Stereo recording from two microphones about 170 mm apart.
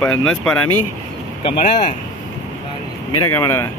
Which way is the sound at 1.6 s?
40° left (ahead or behind).